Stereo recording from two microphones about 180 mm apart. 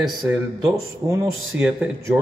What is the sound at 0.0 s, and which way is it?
Speech, centre (ahead or behind).